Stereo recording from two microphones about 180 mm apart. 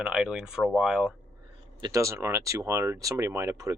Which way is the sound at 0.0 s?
5° right (ahead or behind).